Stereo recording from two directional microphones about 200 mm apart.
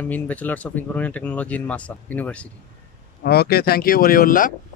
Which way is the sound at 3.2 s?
50° left (ahead or behind).